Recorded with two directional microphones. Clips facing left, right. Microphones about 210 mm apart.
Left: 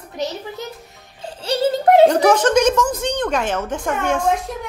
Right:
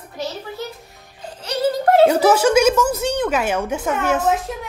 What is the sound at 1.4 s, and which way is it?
Music, 25° left (ahead or behind).